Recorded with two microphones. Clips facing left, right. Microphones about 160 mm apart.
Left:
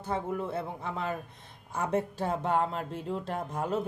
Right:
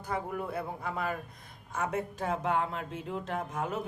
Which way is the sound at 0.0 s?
25° left (ahead or behind).